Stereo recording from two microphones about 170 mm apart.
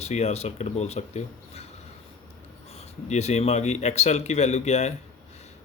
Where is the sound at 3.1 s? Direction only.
40° left (ahead or behind).